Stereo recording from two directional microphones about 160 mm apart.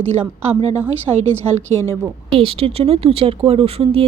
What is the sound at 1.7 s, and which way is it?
Speech, 15° left (ahead or behind).